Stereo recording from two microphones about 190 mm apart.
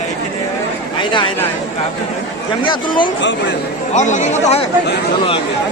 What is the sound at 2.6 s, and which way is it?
Speech, 25° left (ahead or behind).